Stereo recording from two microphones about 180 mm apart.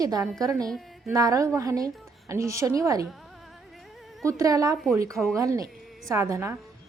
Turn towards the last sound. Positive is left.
turn(degrees=-15)  # may be behind; listen again after turning